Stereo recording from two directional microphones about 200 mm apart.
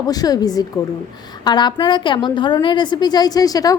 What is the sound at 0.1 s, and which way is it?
A woman's voice, 20° left (ahead or behind).